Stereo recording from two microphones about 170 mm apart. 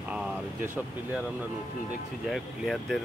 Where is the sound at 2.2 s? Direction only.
Centre (ahead or behind).